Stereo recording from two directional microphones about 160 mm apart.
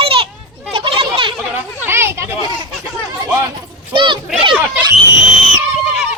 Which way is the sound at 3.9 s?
30° right (ahead or behind).